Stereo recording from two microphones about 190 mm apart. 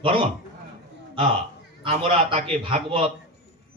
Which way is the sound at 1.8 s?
30° right (ahead or behind).